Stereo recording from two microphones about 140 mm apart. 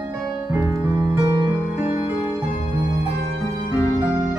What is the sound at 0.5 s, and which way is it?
Music, 20° right (ahead or behind).